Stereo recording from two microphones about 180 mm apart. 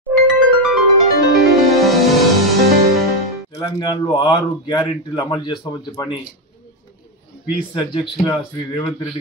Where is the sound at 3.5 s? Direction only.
20° left (ahead or behind).